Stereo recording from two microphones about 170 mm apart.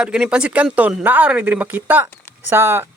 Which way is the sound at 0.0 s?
5° right (ahead or behind).